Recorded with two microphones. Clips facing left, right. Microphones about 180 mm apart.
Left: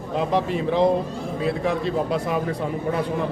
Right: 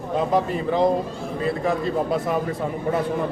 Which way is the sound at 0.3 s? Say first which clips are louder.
Left 1 dB; centre (ahead or behind).